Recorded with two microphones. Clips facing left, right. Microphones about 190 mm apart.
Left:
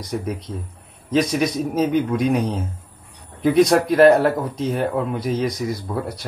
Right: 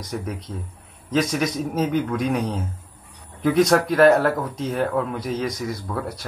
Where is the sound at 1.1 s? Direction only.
20° left (ahead or behind).